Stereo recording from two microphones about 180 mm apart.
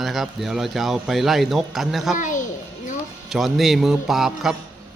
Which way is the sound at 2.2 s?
45° left (ahead or behind).